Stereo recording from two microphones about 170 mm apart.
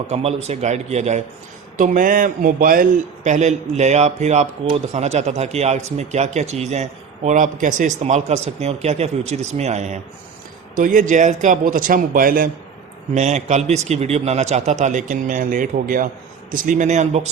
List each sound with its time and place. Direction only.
0.1 s a man's voice: 40° right (ahead or behind); by 12.5 s 55° right (ahead or behind)
13.1 s a man's voice: 45° right (ahead or behind)